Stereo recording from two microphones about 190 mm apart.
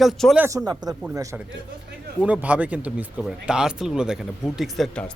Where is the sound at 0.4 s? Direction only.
20° right (ahead or behind).